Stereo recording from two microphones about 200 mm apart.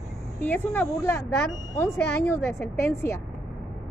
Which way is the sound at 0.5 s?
5° left (ahead or behind).